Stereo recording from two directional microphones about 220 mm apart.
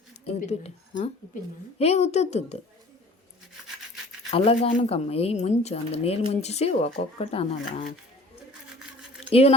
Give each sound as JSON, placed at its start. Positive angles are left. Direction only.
{"t": 0.3, "sound": "speech", "side_deg": 30}
{"t": 4.3, "sound": "speech", "side_deg": 25}